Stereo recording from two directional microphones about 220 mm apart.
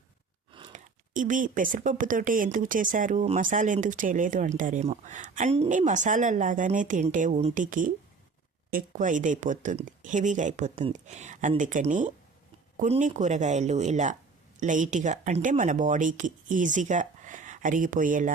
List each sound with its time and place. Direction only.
0.7 s speech: 35° right (ahead or behind)